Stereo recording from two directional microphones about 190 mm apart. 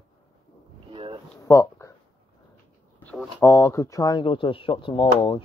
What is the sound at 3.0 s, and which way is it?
Speech, 10° left (ahead or behind).